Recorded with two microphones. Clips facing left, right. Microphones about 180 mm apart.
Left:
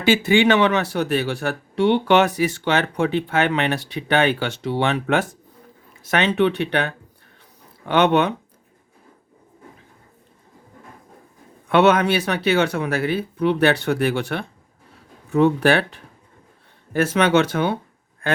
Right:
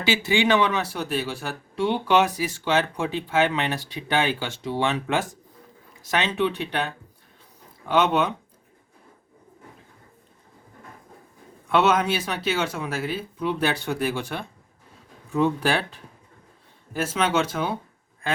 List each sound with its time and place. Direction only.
0.0 s speech: 55° left (ahead or behind)
11.7 s speech: 65° left (ahead or behind)